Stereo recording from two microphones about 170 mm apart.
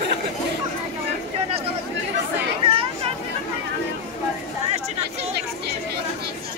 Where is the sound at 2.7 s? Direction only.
30° right (ahead or behind).